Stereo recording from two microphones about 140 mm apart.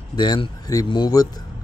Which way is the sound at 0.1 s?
30° left (ahead or behind).